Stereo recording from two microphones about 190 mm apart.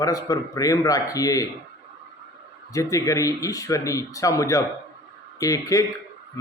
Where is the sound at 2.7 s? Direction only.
15° left (ahead or behind).